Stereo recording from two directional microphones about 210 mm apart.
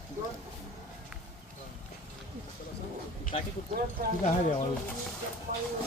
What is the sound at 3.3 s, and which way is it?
Speech, 30° left (ahead or behind).